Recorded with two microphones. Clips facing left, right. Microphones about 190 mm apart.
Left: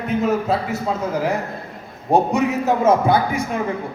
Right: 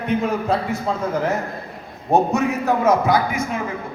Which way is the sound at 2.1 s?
15° left (ahead or behind).